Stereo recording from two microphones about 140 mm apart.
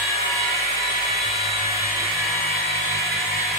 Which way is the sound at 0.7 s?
20° right (ahead or behind).